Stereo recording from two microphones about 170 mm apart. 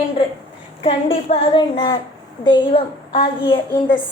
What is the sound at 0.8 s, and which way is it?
A woman's voice, 35° left (ahead or behind).